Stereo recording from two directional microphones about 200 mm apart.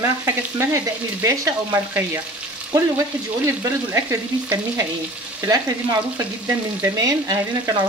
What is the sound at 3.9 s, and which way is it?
Frying, 15° right (ahead or behind).